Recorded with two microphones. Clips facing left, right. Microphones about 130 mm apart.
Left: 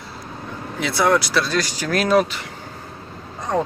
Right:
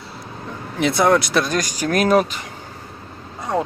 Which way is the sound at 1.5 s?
45° right (ahead or behind).